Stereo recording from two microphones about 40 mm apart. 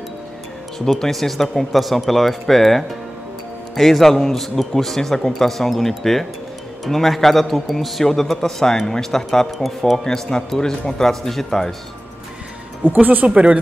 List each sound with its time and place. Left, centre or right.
0.7 s a man's voice: centre
13.0 s speech: right
13.3 s speech: right